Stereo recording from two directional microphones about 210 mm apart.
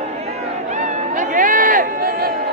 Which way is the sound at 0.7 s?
35° right (ahead or behind).